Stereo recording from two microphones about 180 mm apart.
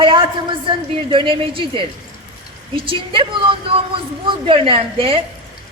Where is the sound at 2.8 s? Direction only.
30° right (ahead or behind).